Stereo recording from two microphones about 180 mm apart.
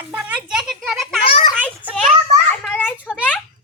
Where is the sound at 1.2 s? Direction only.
30° left (ahead or behind).